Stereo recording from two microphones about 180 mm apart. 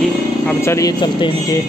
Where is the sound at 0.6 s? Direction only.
20° left (ahead or behind).